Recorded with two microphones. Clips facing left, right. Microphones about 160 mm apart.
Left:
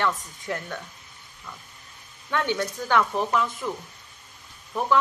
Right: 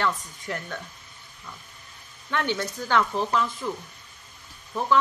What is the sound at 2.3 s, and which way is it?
Speech, 15° left (ahead or behind).